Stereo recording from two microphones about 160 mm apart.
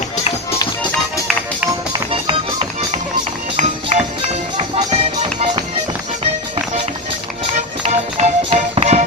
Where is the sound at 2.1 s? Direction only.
35° right (ahead or behind).